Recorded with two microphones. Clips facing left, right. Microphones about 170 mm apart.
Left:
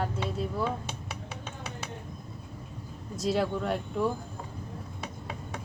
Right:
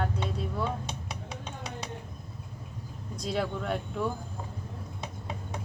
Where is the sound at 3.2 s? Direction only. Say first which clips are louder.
Left 4 dB; centre (ahead or behind).